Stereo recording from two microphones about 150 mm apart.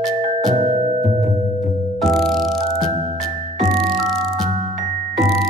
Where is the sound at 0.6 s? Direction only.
45° right (ahead or behind).